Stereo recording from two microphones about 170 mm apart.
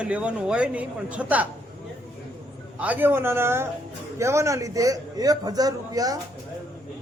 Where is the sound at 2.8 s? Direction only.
10° right (ahead or behind).